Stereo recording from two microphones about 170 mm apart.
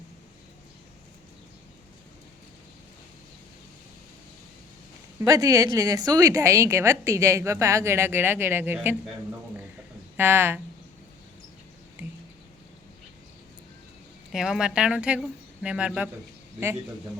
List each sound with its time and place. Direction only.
5.2 s a woman's voice: 20° right (ahead or behind)
10.2 s a woman's voice: 15° right (ahead or behind)
12.0 s a sound: 10° right (ahead or behind)
14.3 s a woman's voice: centre (ahead or behind)